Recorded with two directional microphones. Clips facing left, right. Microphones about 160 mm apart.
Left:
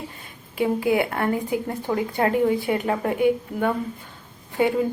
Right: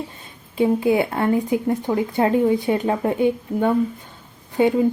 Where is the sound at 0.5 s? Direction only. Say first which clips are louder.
Right 3 dB; 25° right (ahead or behind).